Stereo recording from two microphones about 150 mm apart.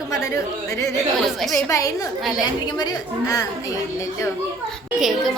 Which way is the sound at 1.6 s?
20° left (ahead or behind).